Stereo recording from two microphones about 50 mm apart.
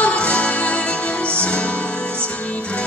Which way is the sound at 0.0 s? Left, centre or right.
Left.